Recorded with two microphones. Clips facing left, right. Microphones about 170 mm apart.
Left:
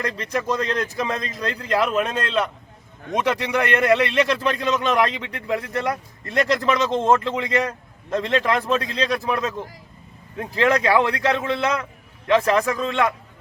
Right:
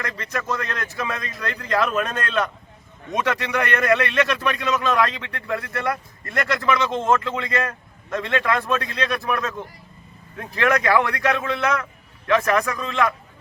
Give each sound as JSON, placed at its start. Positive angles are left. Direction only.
{"t": 0.6, "sound": "a man's voice", "side_deg": 20}
{"t": 1.5, "sound": "a man's voice", "side_deg": 10}
{"t": 1.9, "sound": "a man's voice", "side_deg": 25}
{"t": 6.6, "sound": "a man's voice", "side_deg": 30}